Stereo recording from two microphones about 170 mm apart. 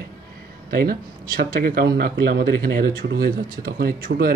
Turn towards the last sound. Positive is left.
turn(degrees=-60)  # may be behind; listen again after turning